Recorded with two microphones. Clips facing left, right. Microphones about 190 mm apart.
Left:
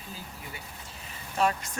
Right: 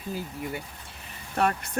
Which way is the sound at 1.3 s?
60° right (ahead or behind).